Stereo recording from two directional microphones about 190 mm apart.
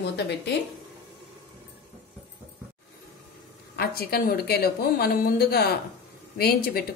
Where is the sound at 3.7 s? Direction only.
55° left (ahead or behind).